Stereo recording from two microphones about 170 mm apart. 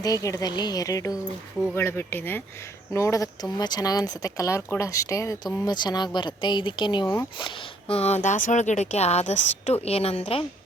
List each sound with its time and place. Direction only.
0.0 s speech: 20° left (ahead or behind)